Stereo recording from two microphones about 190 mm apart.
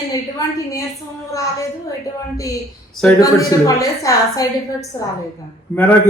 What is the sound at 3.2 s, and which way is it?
A woman's voice, 20° left (ahead or behind).